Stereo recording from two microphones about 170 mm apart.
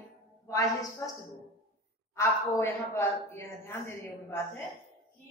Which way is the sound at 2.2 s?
15° left (ahead or behind).